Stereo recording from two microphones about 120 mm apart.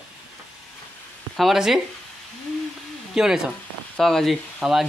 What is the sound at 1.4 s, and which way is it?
Speech, centre (ahead or behind).